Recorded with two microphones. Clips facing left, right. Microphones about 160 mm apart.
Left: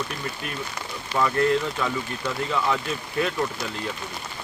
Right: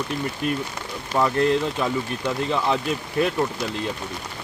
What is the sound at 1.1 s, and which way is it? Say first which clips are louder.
Speech: right 2 dB; 20° right (ahead or behind).